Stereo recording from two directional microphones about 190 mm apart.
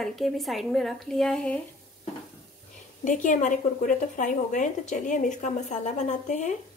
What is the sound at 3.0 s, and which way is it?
A woman's voice, 40° left (ahead or behind).